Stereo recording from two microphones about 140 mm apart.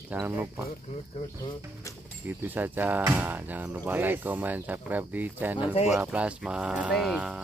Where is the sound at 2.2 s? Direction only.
15° right (ahead or behind).